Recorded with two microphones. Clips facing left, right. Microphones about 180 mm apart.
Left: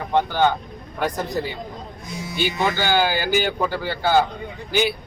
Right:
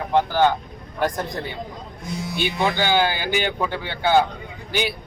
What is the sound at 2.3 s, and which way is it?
Speech, 5° left (ahead or behind).